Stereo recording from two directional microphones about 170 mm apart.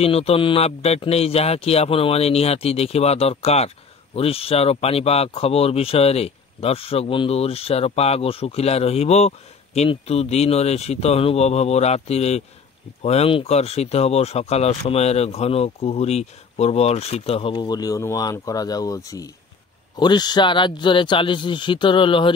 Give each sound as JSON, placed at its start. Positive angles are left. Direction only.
{"t": 0.0, "sound": "speech", "side_deg": 35}